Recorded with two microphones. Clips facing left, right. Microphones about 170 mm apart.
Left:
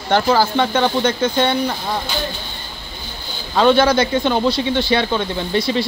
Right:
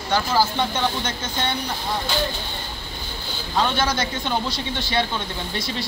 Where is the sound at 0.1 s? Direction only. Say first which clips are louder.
Left 6 dB; 60° left (ahead or behind).